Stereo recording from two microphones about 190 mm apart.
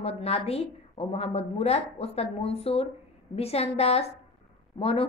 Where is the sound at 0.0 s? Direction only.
30° left (ahead or behind).